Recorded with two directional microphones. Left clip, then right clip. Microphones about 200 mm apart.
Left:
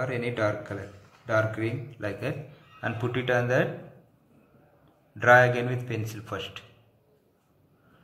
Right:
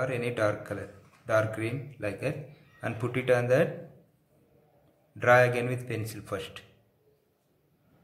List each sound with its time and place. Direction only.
0.0 s a man's voice: 15° right (ahead or behind)
5.1 s a man's voice: 20° right (ahead or behind)